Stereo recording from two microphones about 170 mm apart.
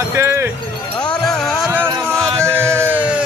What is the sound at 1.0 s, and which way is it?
Music, 25° left (ahead or behind).